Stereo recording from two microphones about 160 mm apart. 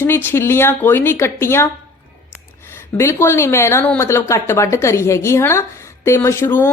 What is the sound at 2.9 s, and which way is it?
Speech, 15° left (ahead or behind).